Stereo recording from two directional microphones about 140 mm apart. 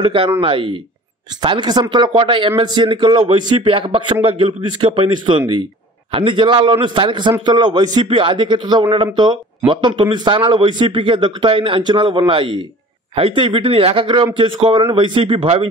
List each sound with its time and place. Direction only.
0.0 s speech: 40° right (ahead or behind)